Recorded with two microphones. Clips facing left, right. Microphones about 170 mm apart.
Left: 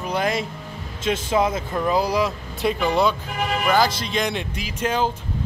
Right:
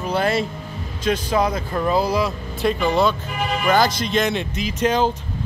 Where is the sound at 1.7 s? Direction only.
15° left (ahead or behind).